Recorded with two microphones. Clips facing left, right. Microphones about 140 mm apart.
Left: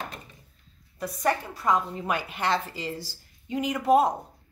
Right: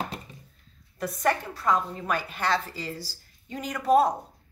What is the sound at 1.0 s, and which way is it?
A woman's voice, 10° left (ahead or behind).